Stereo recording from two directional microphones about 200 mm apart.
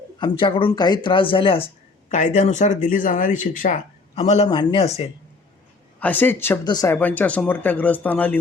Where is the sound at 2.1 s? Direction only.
40° left (ahead or behind).